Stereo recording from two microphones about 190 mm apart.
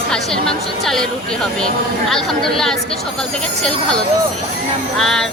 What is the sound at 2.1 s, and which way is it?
Speech, centre (ahead or behind).